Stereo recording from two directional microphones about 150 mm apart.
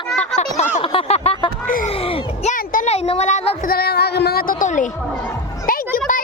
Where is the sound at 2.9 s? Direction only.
45° left (ahead or behind).